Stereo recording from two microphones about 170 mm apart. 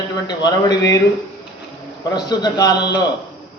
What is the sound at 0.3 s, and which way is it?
Speech, 25° left (ahead or behind).